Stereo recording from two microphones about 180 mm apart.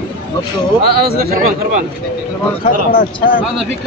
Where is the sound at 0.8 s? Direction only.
60° right (ahead or behind).